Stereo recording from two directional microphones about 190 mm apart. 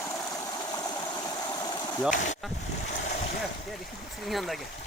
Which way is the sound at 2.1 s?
40° left (ahead or behind).